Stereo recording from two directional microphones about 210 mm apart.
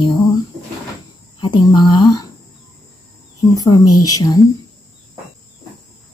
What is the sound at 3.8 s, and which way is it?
Speech, 90° left.